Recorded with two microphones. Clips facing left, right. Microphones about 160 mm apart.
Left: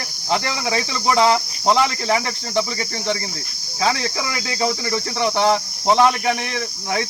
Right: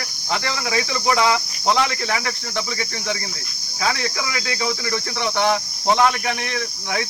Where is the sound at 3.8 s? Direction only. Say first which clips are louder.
Left 2 dB; 30° left (ahead or behind).